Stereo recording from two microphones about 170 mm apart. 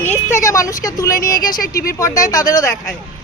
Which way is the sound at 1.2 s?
55° left (ahead or behind).